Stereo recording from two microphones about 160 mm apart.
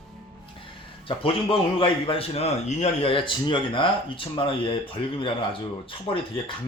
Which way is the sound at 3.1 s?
30° left (ahead or behind).